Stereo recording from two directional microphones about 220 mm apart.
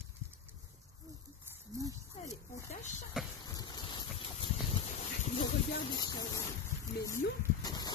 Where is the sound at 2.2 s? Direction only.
15° left (ahead or behind).